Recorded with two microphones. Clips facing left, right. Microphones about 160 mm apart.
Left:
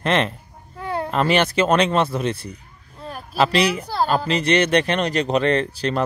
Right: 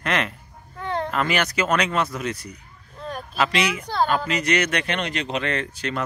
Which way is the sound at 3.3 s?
35° left (ahead or behind).